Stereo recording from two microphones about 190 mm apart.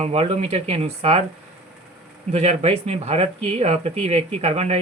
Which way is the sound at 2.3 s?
35° right (ahead or behind).